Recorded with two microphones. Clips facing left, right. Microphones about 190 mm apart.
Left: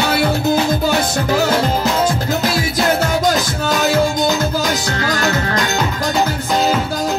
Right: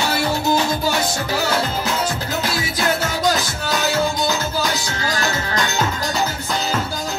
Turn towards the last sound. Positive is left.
turn(degrees=55)  # may be behind; listen again after turning